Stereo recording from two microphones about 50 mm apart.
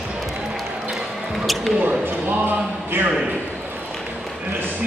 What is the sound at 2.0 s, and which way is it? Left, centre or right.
Speech, right.